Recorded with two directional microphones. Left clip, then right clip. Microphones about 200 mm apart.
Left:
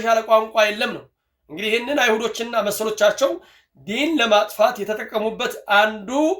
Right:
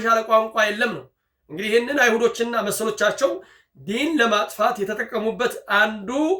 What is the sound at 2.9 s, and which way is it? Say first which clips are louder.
Speech: left 3 dB; 10° right (ahead or behind).